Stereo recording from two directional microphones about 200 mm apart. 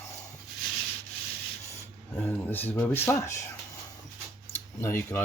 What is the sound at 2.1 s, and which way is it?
Speech, 10° left (ahead or behind).